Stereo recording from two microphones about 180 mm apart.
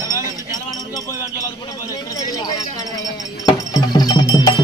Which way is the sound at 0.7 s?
20° left (ahead or behind).